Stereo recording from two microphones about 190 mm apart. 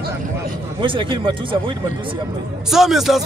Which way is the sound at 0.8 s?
25° right (ahead or behind).